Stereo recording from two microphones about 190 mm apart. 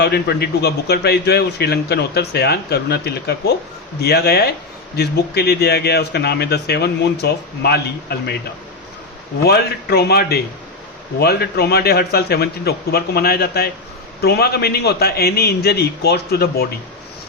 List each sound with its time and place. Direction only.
0.0 s a man's voice: 60° left (ahead or behind)
9.4 s a man's voice: 55° left (ahead or behind)